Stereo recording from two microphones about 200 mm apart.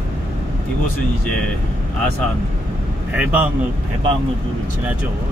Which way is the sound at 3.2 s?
5° right (ahead or behind).